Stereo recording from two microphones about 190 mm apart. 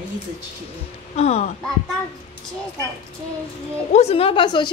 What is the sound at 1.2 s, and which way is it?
Speech, 35° left (ahead or behind).